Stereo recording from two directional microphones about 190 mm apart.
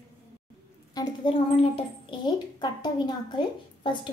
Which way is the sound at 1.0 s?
25° left (ahead or behind).